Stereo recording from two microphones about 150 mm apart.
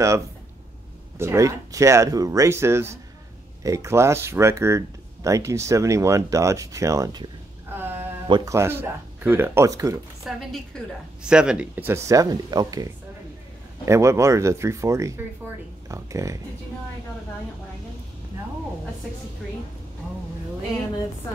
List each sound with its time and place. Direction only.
1.1 s speech: 20° right (ahead or behind)
7.7 s a sound: 15° right (ahead or behind)
8.3 s speech: 20° right (ahead or behind)
10.2 s a woman's voice: centre (ahead or behind); by 12.8 s 25° right (ahead or behind)
13.8 s speech: 20° right (ahead or behind)